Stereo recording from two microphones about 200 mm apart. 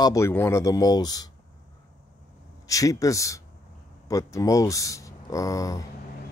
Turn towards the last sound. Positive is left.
turn(degrees=15)  # may be behind; listen again after turning